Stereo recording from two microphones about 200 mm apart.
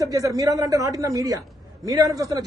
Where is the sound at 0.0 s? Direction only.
15° right (ahead or behind).